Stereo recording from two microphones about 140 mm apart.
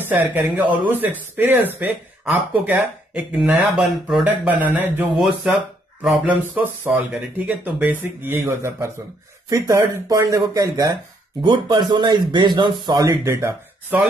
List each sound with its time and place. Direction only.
0.0 s speech: 15° right (ahead or behind)
6.2 s speech: 15° right (ahead or behind)